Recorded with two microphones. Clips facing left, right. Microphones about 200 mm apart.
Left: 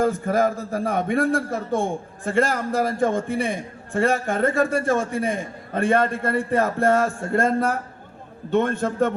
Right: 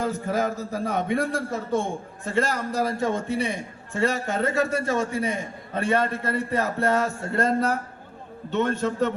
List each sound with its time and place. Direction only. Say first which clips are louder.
0.0 s a man's voice: left 5 dB; 50° left (ahead or behind)